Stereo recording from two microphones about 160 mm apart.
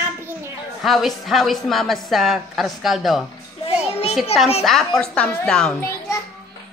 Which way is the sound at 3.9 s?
40° left (ahead or behind).